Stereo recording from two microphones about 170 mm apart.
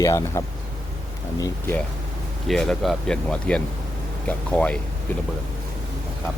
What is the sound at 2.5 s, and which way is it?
Speech, centre (ahead or behind).